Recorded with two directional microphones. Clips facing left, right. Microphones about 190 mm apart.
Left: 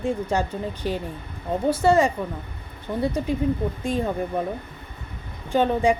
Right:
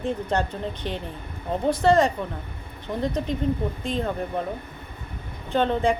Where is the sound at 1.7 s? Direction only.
10° left (ahead or behind).